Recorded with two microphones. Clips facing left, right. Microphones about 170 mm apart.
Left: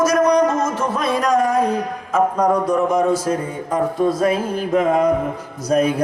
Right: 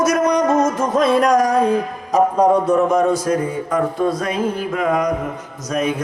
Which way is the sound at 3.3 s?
30° left (ahead or behind).